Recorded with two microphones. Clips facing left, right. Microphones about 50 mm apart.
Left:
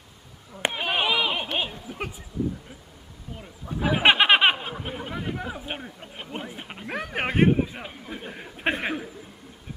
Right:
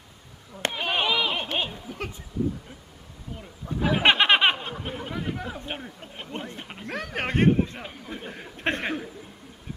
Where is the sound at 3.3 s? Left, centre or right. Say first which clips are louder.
Right 1 dB; centre.